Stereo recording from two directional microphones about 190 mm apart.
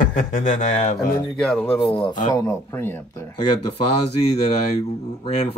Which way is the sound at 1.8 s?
25° left (ahead or behind).